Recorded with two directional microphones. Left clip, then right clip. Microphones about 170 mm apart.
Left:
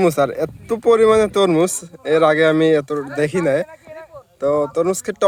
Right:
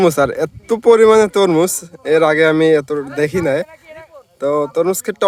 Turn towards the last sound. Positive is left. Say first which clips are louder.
# right 2 dB
turn(degrees=-25)  # may be behind; listen again after turning